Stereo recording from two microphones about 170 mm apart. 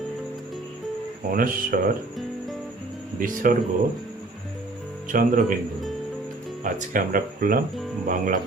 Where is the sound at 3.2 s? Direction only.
55° right (ahead or behind).